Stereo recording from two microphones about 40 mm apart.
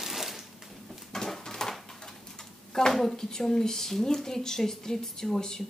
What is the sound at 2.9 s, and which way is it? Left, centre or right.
A woman's voice, centre.